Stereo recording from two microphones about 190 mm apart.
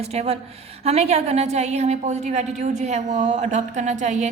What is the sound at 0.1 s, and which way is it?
A woman's voice, 35° right (ahead or behind).